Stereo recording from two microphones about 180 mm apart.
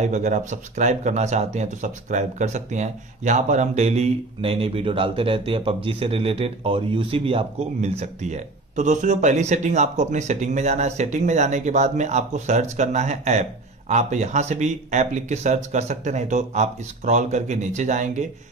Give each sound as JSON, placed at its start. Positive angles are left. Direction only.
{"t": 0.0, "sound": "speech", "side_deg": -40}